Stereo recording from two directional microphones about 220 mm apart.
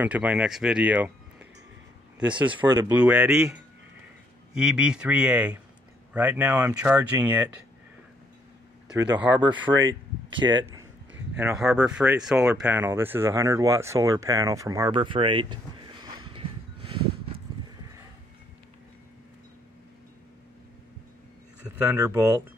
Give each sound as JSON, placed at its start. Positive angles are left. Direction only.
{"t": 0.0, "sound": "speech", "side_deg": -5}
{"t": 2.1, "sound": "speech", "side_deg": -5}
{"t": 2.5, "sound": "speech", "side_deg": -15}
{"t": 3.0, "sound": "speech", "side_deg": -5}
{"t": 8.9, "sound": "speech", "side_deg": -15}
{"t": 11.3, "sound": "speech", "side_deg": -5}
{"t": 21.6, "sound": "speech", "side_deg": -10}